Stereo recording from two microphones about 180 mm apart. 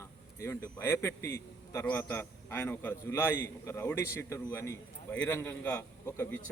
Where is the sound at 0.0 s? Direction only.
15° left (ahead or behind).